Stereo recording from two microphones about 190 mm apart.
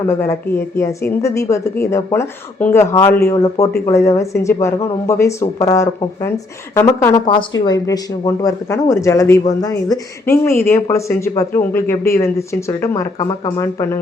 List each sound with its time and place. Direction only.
0.0 s speech: 15° left (ahead or behind)